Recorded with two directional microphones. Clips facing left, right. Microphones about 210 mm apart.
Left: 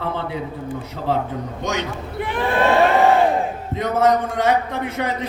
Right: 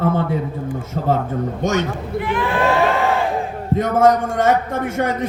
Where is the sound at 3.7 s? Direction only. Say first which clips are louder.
Right 4 dB; 45° right (ahead or behind).